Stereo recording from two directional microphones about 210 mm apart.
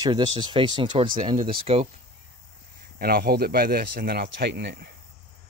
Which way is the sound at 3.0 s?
45° right (ahead or behind).